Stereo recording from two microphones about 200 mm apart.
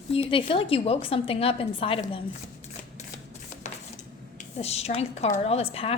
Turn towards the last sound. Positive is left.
turn(degrees=30)  # may be behind; listen again after turning